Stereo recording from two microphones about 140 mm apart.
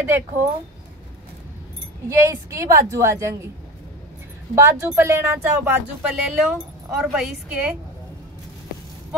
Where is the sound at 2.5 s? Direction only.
20° right (ahead or behind).